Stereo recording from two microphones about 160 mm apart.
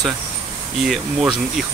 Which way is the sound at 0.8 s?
Centre (ahead or behind).